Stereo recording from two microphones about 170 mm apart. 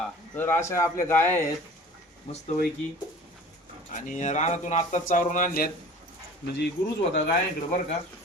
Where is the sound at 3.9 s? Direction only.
45° left (ahead or behind).